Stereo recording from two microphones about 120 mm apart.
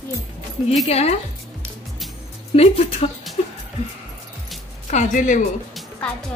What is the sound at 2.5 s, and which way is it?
Speech, 55° left (ahead or behind).